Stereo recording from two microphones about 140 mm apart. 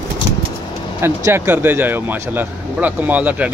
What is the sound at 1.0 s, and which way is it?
Speech, 20° right (ahead or behind).